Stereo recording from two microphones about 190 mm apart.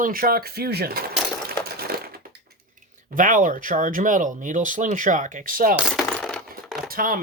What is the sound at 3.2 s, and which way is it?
Speech, 45° right (ahead or behind).